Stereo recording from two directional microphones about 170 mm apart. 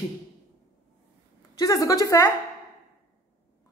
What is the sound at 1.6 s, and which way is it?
Speech, 20° left (ahead or behind).